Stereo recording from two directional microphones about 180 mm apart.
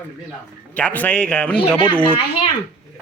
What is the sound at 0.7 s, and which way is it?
Speech, 10° left (ahead or behind).